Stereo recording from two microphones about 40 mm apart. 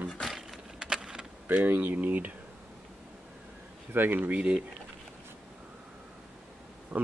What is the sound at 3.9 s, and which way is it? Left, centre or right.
Speech, right.